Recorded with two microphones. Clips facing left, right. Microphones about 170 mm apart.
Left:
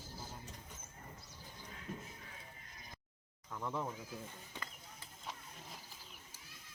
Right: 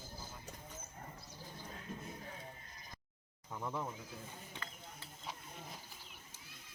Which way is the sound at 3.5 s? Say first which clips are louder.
Even; 15° right (ahead or behind).